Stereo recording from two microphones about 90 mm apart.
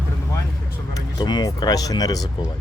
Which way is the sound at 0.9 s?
50° left (ahead or behind).